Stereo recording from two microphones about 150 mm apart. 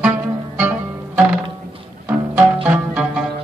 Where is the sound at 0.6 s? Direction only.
10° right (ahead or behind).